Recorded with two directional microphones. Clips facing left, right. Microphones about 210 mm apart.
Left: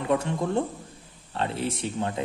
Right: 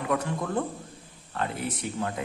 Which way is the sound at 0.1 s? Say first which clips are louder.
Left 3 dB; 25° left (ahead or behind).